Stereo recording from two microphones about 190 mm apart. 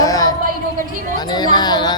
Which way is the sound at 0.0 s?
20° left (ahead or behind).